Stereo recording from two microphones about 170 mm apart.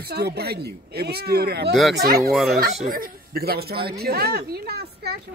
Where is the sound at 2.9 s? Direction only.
60° right (ahead or behind).